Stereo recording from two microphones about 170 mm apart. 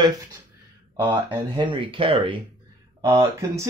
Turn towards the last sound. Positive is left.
turn(degrees=-15)  # may be behind; listen again after turning